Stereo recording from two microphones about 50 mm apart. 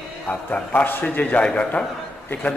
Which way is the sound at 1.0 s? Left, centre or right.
Left.